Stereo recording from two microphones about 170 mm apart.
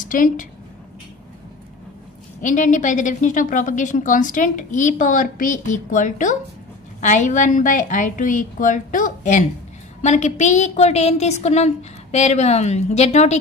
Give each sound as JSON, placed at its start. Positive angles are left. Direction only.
{"t": 0.0, "sound": "a woman's voice", "side_deg": 50}
{"t": 2.4, "sound": "a woman's voice", "side_deg": 50}